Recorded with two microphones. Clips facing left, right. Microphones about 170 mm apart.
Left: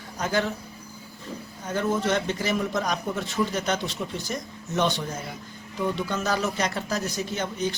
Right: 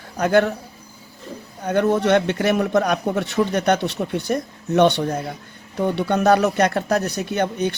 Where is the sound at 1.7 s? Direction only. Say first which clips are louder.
Right 8 dB; 65° right (ahead or behind).